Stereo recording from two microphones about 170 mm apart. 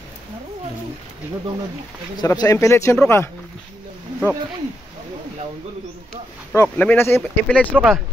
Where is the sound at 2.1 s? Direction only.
25° left (ahead or behind).